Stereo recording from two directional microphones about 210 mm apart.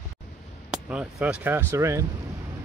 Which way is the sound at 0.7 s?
5° right (ahead or behind).